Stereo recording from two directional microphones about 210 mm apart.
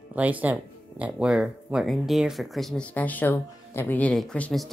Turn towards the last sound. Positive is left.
turn(degrees=5)  # may be behind; listen again after turning